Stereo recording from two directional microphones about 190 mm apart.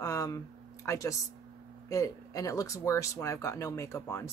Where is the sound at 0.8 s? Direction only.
15° left (ahead or behind).